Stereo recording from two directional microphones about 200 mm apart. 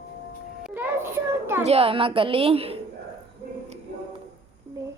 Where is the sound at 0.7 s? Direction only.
10° right (ahead or behind).